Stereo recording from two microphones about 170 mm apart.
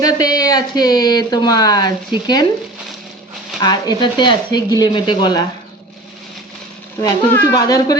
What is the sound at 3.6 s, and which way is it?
Speech, 25° left (ahead or behind).